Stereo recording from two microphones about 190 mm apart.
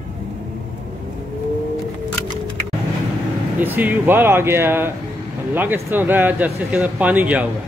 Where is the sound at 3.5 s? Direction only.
10° right (ahead or behind).